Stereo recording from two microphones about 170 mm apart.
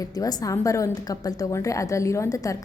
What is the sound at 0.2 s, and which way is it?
A woman's voice, 20° left (ahead or behind).